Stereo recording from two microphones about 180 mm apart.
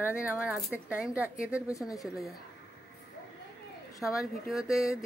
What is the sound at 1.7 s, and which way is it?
Speech, 20° left (ahead or behind).